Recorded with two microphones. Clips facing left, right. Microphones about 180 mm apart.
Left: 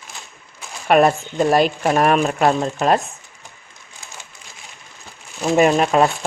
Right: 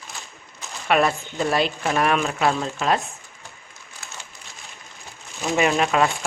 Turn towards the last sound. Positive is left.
turn(degrees=40)  # may be behind; listen again after turning